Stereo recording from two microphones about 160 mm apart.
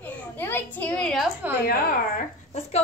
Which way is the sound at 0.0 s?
10° left (ahead or behind).